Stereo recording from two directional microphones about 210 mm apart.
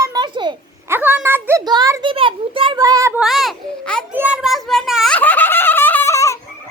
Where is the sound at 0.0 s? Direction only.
20° right (ahead or behind).